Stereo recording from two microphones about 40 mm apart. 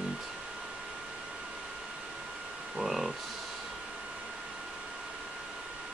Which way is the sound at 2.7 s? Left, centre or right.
Centre.